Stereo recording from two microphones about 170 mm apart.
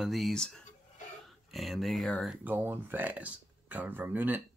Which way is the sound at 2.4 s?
10° right (ahead or behind).